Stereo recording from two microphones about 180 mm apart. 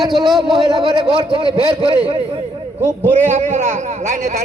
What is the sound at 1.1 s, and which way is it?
Speech, 25° right (ahead or behind).